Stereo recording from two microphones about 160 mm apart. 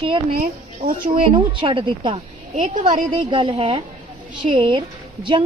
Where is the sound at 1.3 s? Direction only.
30° right (ahead or behind).